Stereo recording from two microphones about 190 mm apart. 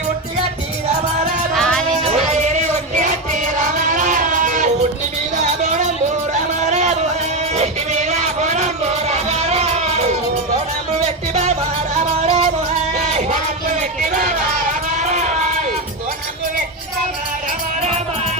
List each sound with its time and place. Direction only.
1.5 s music: 5° left (ahead or behind)
2.0 s music: 35° right (ahead or behind)
6.7 s music: 35° right (ahead or behind)
14.0 s a sound: 40° right (ahead or behind)
15.0 s music: 40° right (ahead or behind)